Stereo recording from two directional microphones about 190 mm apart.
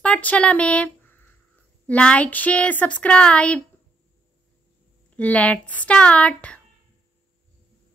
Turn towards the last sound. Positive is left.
turn(degrees=5)  # may be behind; listen again after turning